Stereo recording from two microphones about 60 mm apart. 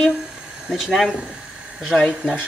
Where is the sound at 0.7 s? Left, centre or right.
Centre.